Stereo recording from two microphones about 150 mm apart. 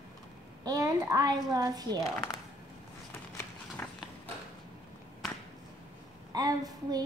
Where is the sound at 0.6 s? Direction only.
20° right (ahead or behind).